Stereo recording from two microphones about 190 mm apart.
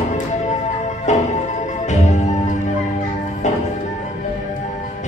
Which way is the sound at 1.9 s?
40° left (ahead or behind).